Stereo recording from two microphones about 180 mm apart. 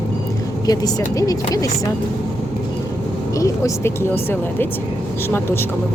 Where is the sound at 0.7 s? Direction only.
20° left (ahead or behind).